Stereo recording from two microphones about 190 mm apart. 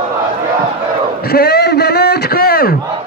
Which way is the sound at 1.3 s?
55° left (ahead or behind).